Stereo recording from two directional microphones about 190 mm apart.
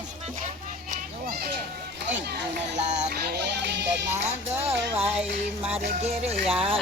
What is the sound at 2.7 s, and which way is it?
Music, 35° right (ahead or behind).